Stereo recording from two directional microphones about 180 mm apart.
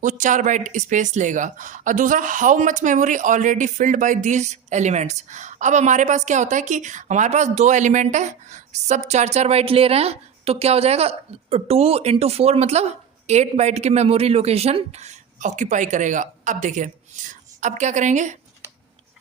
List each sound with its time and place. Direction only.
0.0 s speech: 45° right (ahead or behind)